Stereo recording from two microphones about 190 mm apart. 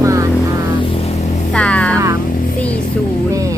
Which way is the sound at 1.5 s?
5° left (ahead or behind).